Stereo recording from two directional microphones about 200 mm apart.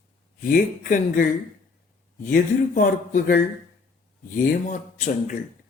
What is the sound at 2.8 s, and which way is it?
Speech, 40° left (ahead or behind).